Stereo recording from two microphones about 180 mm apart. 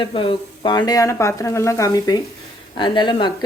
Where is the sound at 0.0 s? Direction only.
30° left (ahead or behind).